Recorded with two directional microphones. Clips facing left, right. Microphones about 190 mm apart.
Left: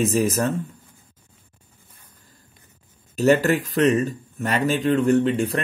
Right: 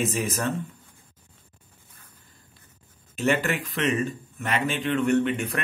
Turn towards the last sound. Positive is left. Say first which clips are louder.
# left 4 dB
turn(degrees=30)  # may be behind; listen again after turning